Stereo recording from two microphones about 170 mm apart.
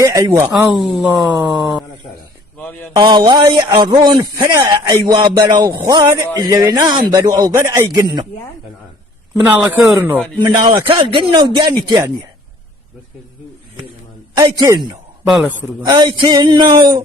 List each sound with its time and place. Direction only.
0.0 s speech: 20° right (ahead or behind)
0.8 s speech: centre (ahead or behind)
2.6 s a man's voice: 10° left (ahead or behind)
2.9 s a man's voice: 25° right (ahead or behind)
9.4 s speech: 10° right (ahead or behind)
10.4 s a man's voice: 25° right (ahead or behind)
14.3 s a man's voice: 20° right (ahead or behind)
15.3 s speech: centre (ahead or behind)
16.0 s a man's voice: 25° right (ahead or behind)